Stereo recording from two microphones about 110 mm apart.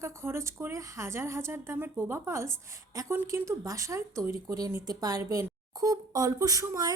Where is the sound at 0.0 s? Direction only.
25° right (ahead or behind).